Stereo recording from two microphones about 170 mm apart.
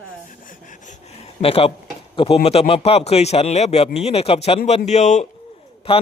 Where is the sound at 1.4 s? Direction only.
35° left (ahead or behind).